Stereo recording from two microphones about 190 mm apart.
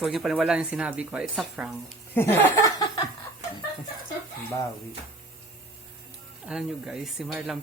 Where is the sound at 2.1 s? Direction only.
15° left (ahead or behind).